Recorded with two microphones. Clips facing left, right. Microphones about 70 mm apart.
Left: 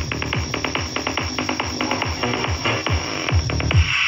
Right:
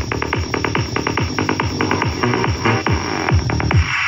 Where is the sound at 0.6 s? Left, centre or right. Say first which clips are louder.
Right 5 dB; right.